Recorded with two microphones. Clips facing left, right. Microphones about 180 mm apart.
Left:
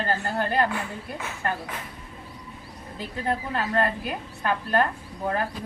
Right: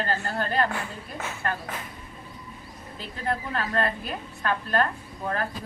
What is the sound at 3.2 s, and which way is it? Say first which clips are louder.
Speech: left 1 dB; 15° left (ahead or behind).